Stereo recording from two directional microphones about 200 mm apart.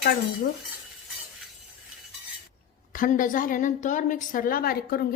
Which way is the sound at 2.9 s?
40° left (ahead or behind).